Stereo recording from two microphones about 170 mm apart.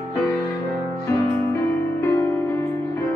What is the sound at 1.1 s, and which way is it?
Music, 15° left (ahead or behind).